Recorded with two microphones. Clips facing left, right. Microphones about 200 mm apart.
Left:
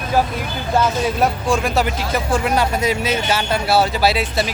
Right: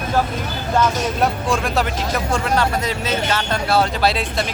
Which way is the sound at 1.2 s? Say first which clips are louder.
Left 1 dB; centre (ahead or behind).